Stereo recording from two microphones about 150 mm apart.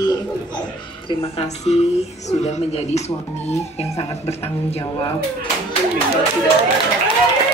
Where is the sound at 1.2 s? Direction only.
45° left (ahead or behind).